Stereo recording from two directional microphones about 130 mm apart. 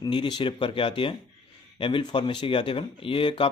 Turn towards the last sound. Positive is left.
turn(degrees=45)  # may be behind; listen again after turning